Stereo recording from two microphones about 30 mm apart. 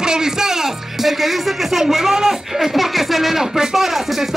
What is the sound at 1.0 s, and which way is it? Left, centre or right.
Speech, centre.